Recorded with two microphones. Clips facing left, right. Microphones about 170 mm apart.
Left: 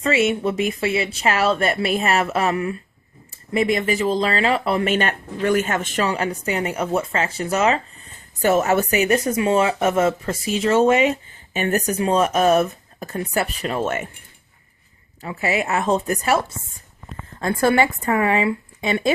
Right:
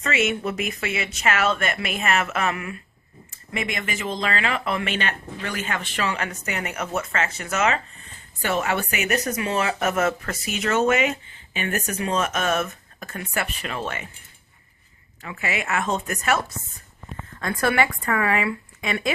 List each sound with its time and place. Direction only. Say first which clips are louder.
0.0 s speech: left 5 dB; 30° left (ahead or behind); by 14.2 s 50° left (ahead or behind)
15.2 s speech: left 6 dB; 35° left (ahead or behind)